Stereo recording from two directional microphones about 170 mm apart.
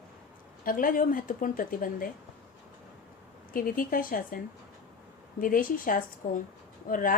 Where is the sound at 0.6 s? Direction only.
55° left (ahead or behind).